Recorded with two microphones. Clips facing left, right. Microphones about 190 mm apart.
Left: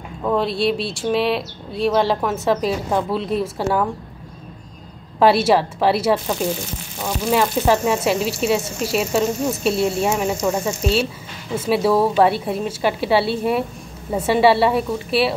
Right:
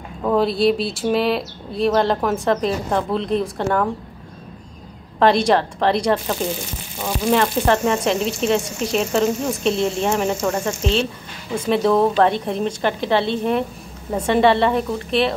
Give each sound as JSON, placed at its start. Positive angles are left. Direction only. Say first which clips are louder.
{"t": 0.2, "sound": "speech", "louder": "right 2 dB", "side_deg": 0}
{"t": 5.2, "sound": "a woman's voice", "louder": "left 1 dB", "side_deg": 5}